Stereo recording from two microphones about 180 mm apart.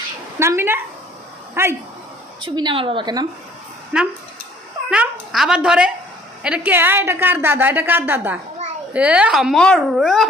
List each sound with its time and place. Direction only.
0.3 s a woman's voice: 15° right (ahead or behind)
2.4 s a woman's voice: 25° right (ahead or behind)
3.9 s a woman's voice: 5° right (ahead or behind)